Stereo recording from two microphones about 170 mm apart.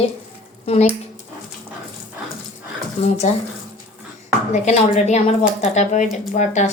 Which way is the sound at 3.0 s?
40° left (ahead or behind).